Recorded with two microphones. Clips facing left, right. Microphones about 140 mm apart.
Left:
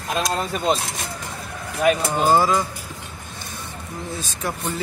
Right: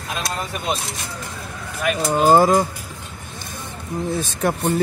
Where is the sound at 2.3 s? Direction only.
45° right (ahead or behind).